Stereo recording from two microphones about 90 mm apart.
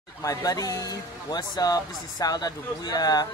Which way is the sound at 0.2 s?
40° left (ahead or behind).